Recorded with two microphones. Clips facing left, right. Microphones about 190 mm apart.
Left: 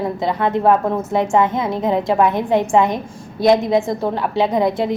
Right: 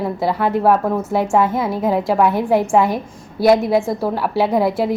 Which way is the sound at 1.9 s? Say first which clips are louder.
Even; 20° left (ahead or behind).